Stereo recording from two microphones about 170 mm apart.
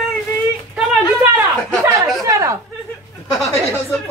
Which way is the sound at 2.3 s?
15° right (ahead or behind).